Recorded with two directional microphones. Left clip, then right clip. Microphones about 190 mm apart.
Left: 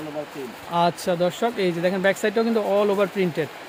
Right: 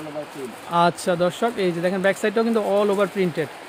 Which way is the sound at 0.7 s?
15° right (ahead or behind).